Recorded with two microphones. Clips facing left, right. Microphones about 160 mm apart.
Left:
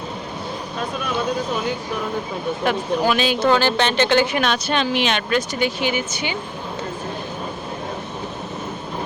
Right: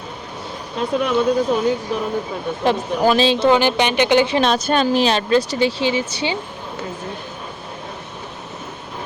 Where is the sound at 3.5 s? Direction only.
15° right (ahead or behind).